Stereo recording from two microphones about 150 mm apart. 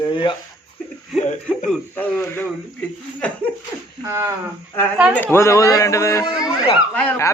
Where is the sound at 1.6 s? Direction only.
10° left (ahead or behind).